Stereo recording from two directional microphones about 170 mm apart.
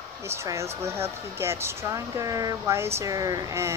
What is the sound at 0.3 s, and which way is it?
Speech, 15° right (ahead or behind).